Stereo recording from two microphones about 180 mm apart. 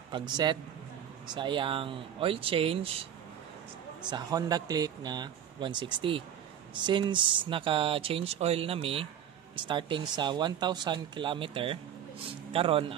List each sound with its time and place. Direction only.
0.1 s speech: 25° right (ahead or behind)
4.1 s speech: 20° right (ahead or behind)